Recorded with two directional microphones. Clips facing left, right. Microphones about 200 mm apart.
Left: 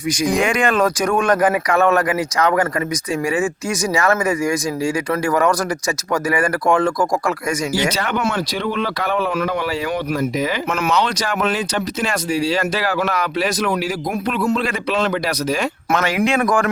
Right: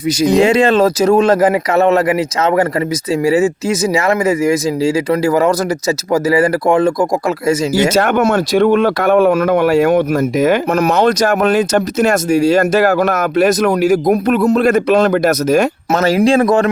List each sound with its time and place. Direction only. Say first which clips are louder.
0.2 s speech: right 8 dB; 25° right (ahead or behind)
7.8 s speech: right 8 dB; 50° right (ahead or behind)
10.7 s speech: right 7 dB; 40° right (ahead or behind)